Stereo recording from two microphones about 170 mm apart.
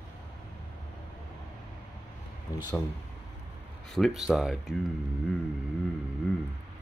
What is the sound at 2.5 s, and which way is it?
Speech, 20° left (ahead or behind).